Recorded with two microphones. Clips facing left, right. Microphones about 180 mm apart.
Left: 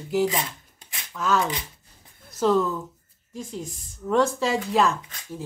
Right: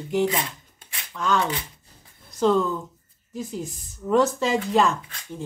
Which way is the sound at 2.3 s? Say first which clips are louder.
Right 1 dB; centre (ahead or behind).